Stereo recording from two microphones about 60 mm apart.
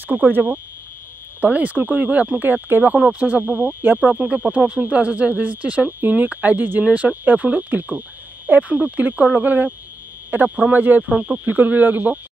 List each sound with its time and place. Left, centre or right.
0.1 s speech: right
11.1 s speech: centre
11.4 s speech: right